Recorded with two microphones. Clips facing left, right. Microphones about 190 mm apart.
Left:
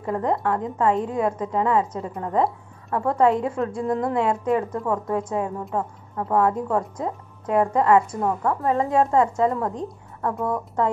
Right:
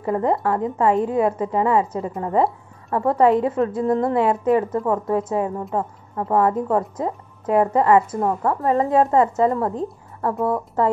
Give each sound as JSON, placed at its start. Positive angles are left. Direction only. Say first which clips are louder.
{"t": 0.0, "sound": "a woman's voice", "louder": "right 3 dB", "side_deg": -5}
{"t": 8.1, "sound": "a woman's voice", "louder": "right 3 dB", "side_deg": -20}
{"t": 8.5, "sound": "a woman's voice", "louder": "right 3 dB", "side_deg": 0}